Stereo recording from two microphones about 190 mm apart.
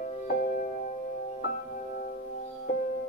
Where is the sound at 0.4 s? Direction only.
50° left (ahead or behind).